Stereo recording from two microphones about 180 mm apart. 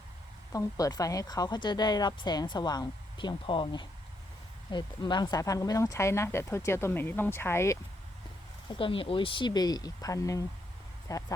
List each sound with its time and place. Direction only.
0.5 s speech: 20° left (ahead or behind)
8.7 s speech: 30° left (ahead or behind)